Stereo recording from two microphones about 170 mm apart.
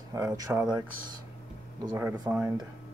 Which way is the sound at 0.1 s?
20° right (ahead or behind).